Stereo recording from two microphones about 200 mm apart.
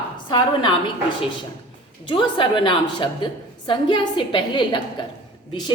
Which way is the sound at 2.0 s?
25° left (ahead or behind).